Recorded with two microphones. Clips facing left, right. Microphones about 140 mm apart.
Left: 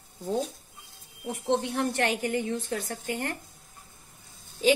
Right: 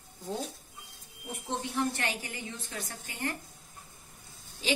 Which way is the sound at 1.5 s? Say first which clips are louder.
Left 5 dB; 55° left (ahead or behind).